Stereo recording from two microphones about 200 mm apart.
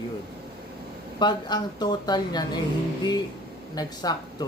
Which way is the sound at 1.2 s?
20° left (ahead or behind).